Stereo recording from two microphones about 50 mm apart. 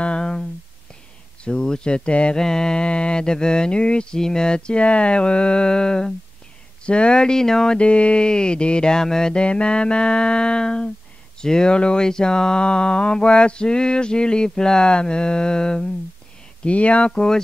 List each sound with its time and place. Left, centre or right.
0.0 s a sound: centre
1.4 s speech: centre
2.3 s speech: centre
16.6 s speech: left
17.1 s speech: centre